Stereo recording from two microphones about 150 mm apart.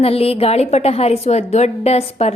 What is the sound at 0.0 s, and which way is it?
A woman's voice, 40° left (ahead or behind).